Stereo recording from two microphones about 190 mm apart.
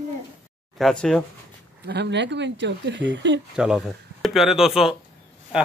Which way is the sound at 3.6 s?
Centre (ahead or behind).